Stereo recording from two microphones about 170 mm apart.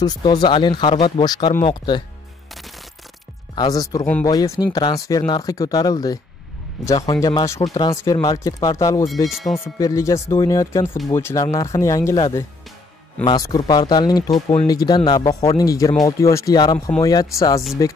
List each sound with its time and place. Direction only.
0.0 s speech: 25° left (ahead or behind)
3.5 s speech: 20° left (ahead or behind)
9.3 s speech: centre (ahead or behind)
9.8 s speech: 20° left (ahead or behind)
13.2 s speech: 25° left (ahead or behind)